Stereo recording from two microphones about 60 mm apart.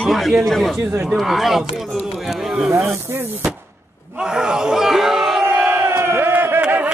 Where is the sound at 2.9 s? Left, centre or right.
Right.